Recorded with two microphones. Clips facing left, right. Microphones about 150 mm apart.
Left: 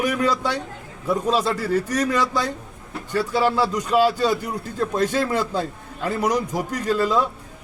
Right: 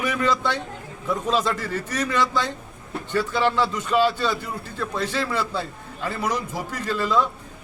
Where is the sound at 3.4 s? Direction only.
10° left (ahead or behind).